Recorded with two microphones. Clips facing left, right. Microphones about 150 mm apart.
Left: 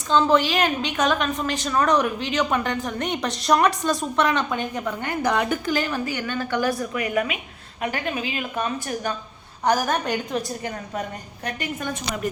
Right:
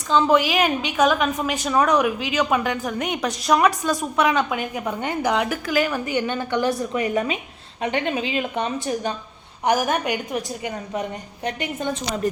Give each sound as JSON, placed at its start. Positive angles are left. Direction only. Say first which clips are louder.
{"t": 0.1, "sound": "a woman's voice", "louder": "right 1 dB", "side_deg": -10}
{"t": 4.9, "sound": "a woman's voice", "louder": "right 2 dB", "side_deg": -20}
{"t": 5.3, "sound": "a woman's voice", "louder": "even", "side_deg": -5}
{"t": 6.1, "sound": "a woman's voice", "louder": "right 3 dB", "side_deg": -20}